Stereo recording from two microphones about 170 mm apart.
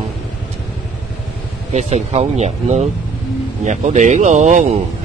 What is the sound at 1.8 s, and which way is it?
Speech, 45° right (ahead or behind).